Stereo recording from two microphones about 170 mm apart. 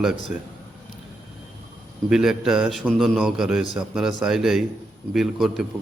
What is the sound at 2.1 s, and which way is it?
Speech, 5° right (ahead or behind).